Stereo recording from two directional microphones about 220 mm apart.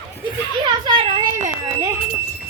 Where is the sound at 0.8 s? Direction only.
20° right (ahead or behind).